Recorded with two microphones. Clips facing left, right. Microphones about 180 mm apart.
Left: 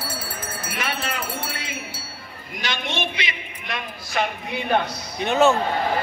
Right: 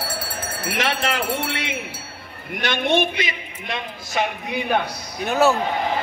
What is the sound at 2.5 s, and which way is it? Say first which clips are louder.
Speech: right 8 dB; 60° right (ahead or behind).